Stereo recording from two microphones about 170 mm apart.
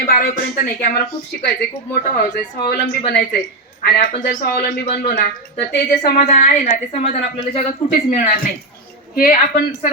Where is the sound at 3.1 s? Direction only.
60° left (ahead or behind); by 6.0 s 75° left (ahead or behind).